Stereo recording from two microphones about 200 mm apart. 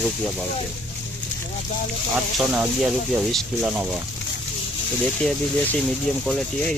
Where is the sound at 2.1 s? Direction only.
5° right (ahead or behind).